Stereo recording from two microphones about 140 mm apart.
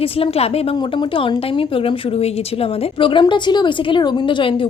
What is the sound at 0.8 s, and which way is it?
Speech, 35° left (ahead or behind).